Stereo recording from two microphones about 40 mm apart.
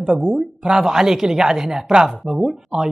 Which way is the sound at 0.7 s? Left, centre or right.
Centre.